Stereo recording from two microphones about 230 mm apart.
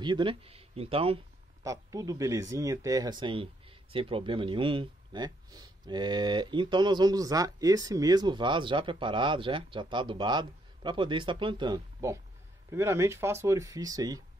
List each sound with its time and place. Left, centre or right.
0.0 s speech: right
1.6 s speech: centre